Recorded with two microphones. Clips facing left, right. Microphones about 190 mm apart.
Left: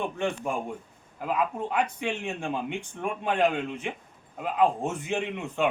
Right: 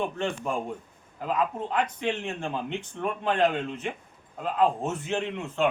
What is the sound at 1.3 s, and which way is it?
Speech, 10° left (ahead or behind).